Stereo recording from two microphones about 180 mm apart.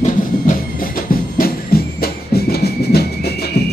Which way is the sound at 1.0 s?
55° left (ahead or behind).